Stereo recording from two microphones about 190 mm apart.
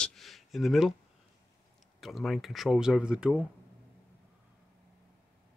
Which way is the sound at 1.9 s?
Centre (ahead or behind).